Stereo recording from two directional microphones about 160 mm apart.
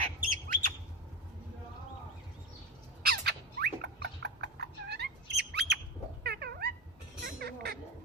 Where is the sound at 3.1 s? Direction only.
80° right.